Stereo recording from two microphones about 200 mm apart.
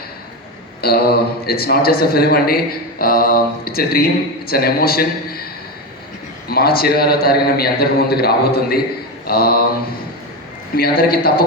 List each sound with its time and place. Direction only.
0.8 s speech: 50° left (ahead or behind)
6.5 s speech: 50° left (ahead or behind)
10.8 s speech: 50° left (ahead or behind)